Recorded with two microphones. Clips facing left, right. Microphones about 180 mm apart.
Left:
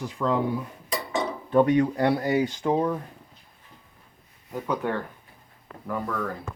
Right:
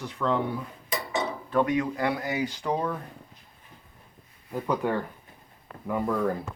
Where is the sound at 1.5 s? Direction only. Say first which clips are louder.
Left 5 dB; 35° left (ahead or behind).